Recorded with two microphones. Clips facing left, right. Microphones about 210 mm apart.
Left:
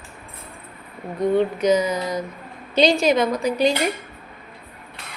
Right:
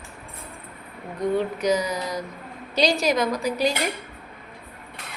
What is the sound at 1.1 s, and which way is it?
Speech, 25° left (ahead or behind).